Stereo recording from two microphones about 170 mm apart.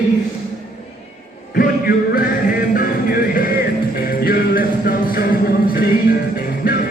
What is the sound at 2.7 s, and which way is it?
Music, 55° left (ahead or behind).